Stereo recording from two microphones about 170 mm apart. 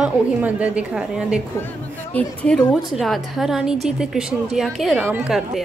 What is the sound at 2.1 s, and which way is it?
A woman's voice, 5° left (ahead or behind).